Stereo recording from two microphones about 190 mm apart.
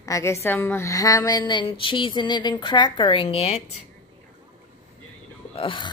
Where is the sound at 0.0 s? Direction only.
15° left (ahead or behind); by 3.6 s 35° left (ahead or behind).